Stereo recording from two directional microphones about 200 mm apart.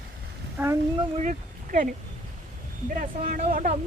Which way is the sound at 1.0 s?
35° right (ahead or behind).